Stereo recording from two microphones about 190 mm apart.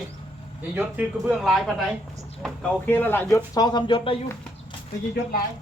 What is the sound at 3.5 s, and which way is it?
Speech, 20° left (ahead or behind).